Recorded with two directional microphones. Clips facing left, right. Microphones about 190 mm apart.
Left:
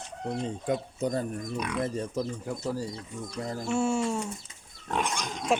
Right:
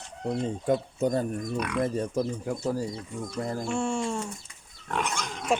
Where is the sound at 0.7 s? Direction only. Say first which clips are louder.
Right 4 dB; 45° right (ahead or behind).